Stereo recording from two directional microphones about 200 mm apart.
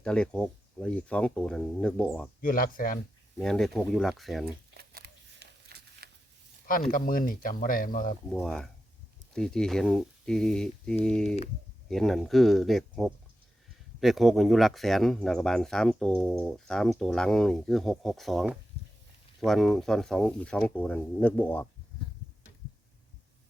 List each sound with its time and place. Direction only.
0.0 s speech: 5° left (ahead or behind)
2.4 s speech: 45° left (ahead or behind)
3.3 s speech: centre (ahead or behind)
4.7 s a sound: 50° right (ahead or behind)
6.7 s speech: 45° left (ahead or behind)
8.3 s speech: 5° left (ahead or behind)